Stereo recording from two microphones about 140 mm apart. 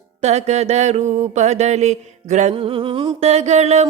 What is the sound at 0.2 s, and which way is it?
Music, 50° right (ahead or behind).